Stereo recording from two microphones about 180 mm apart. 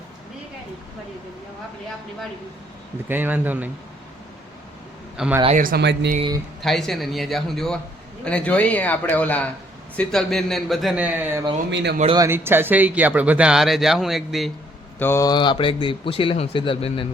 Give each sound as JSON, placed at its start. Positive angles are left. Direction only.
{"t": 3.1, "sound": "speech", "side_deg": -10}
{"t": 5.1, "sound": "a man's voice", "side_deg": -5}
{"t": 5.5, "sound": "speech", "side_deg": -50}
{"t": 5.8, "sound": "speech", "side_deg": -75}
{"t": 6.6, "sound": "a man's voice", "side_deg": 0}
{"t": 11.7, "sound": "speech", "side_deg": -75}
{"t": 12.1, "sound": "speech", "side_deg": -15}
{"t": 14.9, "sound": "a man's voice", "side_deg": 15}